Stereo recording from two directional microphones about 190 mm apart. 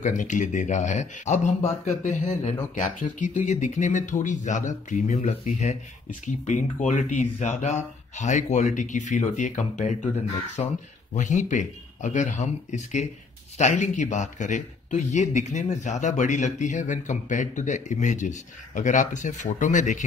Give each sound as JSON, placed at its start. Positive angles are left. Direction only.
{"t": 0.0, "sound": "speech", "side_deg": 40}